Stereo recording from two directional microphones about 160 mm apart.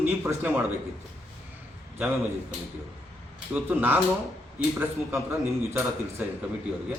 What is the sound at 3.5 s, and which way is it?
A man's voice, 10° right (ahead or behind).